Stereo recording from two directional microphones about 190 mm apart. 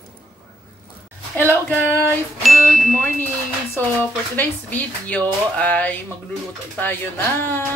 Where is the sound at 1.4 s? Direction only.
10° left (ahead or behind).